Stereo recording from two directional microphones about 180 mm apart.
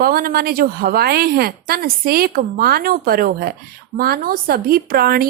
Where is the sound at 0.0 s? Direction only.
55° right (ahead or behind).